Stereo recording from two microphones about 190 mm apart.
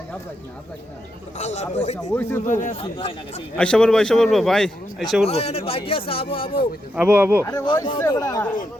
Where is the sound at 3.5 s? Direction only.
5° left (ahead or behind).